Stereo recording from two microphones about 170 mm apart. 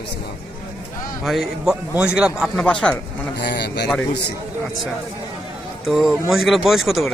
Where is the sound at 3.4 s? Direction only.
75° left (ahead or behind).